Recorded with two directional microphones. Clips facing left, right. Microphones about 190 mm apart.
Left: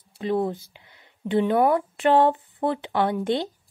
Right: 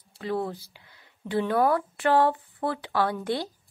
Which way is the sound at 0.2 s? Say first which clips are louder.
Left 5 dB; 20° left (ahead or behind).